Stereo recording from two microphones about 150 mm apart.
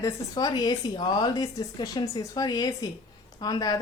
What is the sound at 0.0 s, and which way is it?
A woman's voice, 25° left (ahead or behind).